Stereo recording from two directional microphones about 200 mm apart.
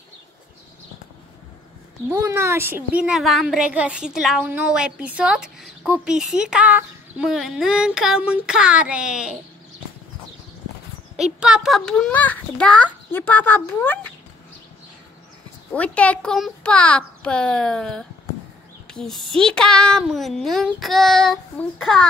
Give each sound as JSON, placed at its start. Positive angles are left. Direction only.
{"t": 2.0, "sound": "a woman's voice", "side_deg": -15}
{"t": 11.3, "sound": "a child's voice", "side_deg": -5}
{"t": 15.7, "sound": "a woman's voice", "side_deg": 5}